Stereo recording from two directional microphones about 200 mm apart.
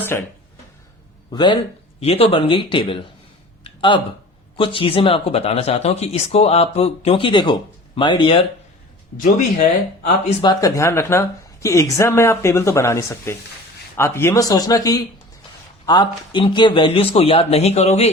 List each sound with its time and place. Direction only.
0.1 s speech: 10° left (ahead or behind)
1.3 s speech: 20° left (ahead or behind)
3.6 s a sound: 25° left (ahead or behind)
4.5 s speech: 25° left (ahead or behind)
10.2 s speech: 20° left (ahead or behind)